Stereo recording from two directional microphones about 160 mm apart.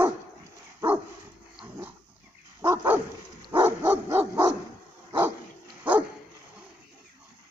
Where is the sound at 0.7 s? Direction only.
10° right (ahead or behind).